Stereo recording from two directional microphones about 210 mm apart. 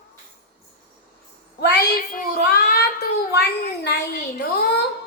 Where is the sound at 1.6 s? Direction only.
50° left (ahead or behind).